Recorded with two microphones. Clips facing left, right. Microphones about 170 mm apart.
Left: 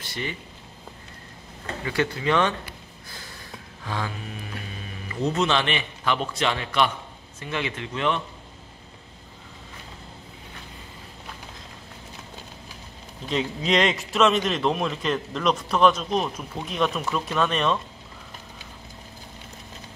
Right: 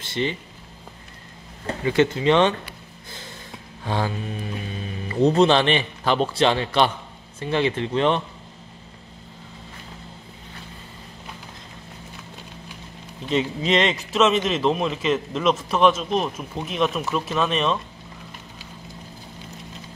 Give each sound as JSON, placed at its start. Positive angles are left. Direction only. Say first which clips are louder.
{"t": 0.0, "sound": "speech", "louder": "right 7 dB", "side_deg": -25}
{"t": 1.9, "sound": "speech", "louder": "right 6 dB", "side_deg": -20}
{"t": 3.1, "sound": "snort", "louder": "right 4 dB", "side_deg": -25}
{"t": 3.8, "sound": "a man's voice", "louder": "right 6 dB", "side_deg": -30}
{"t": 13.3, "sound": "speech", "louder": "right 3 dB", "side_deg": 0}